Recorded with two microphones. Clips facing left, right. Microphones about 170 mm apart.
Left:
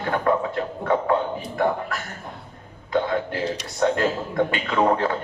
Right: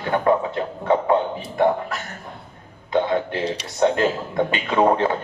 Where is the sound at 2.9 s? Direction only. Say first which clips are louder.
Right 2 dB; 20° right (ahead or behind).